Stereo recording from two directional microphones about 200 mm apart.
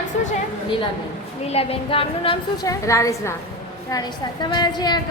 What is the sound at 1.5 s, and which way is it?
A woman's voice, 30° left (ahead or behind).